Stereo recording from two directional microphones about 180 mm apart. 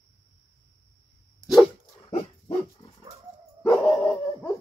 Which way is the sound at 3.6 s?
15° left (ahead or behind).